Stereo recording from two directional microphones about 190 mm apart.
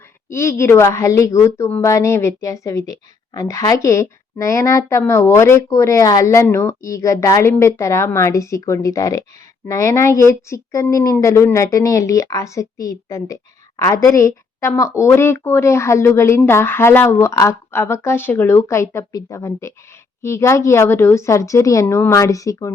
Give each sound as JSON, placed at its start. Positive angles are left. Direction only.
{"t": 0.3, "sound": "a woman's voice", "side_deg": 15}